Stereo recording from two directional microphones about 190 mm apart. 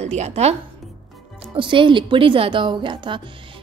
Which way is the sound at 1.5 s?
25° right (ahead or behind).